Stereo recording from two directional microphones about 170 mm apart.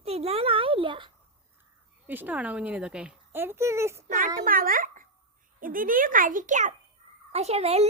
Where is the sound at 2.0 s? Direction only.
10° right (ahead or behind).